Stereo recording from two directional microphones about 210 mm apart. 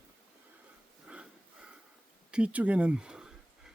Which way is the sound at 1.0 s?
5° right (ahead or behind).